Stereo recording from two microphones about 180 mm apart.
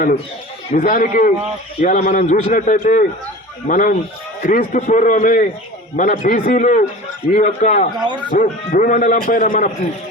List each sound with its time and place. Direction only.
0.7 s a man's voice: 50° left (ahead or behind)
1.8 s a man's voice: 40° left (ahead or behind)